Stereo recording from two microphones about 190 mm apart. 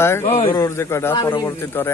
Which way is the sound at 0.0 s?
15° left (ahead or behind).